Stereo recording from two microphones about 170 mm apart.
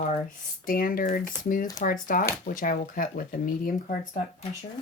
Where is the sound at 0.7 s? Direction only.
55° left (ahead or behind).